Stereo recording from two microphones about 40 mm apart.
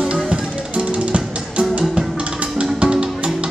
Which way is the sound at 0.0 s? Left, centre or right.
Right.